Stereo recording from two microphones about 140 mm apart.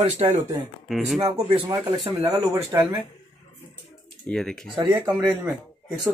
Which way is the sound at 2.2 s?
20° right (ahead or behind).